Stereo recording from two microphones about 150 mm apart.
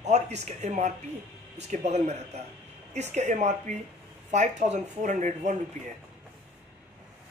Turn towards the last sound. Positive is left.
turn(degrees=-55)  # may be behind; listen again after turning